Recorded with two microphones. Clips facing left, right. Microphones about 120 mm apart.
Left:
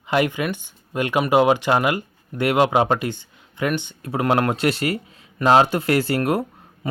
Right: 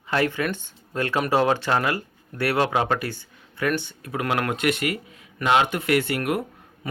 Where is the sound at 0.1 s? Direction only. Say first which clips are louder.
Left 3 dB; 15° left (ahead or behind).